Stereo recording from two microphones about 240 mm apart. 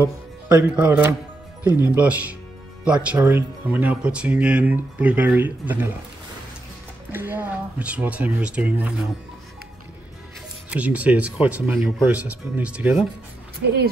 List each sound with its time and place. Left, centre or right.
0.0 s speech: centre
7.1 s speech: centre
10.7 s speech: centre
13.6 s speech: right